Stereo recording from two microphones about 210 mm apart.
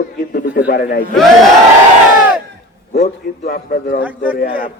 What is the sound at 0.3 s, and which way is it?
Speech, 45° left (ahead or behind).